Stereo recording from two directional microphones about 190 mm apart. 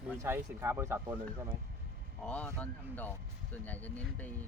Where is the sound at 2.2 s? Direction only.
5° left (ahead or behind).